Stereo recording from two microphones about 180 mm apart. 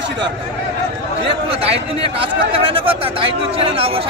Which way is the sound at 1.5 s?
35° right (ahead or behind).